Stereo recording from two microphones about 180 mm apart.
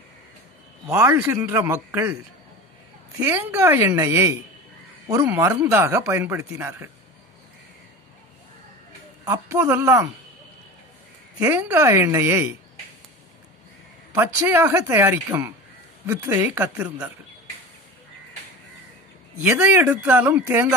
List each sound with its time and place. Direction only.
0.8 s speech: 15° right (ahead or behind)
3.2 s speech: 10° right (ahead or behind)
9.2 s speech: 20° right (ahead or behind)
11.3 s speech: 10° right (ahead or behind)
14.1 s speech: 10° right (ahead or behind)
19.3 s speech: 10° right (ahead or behind)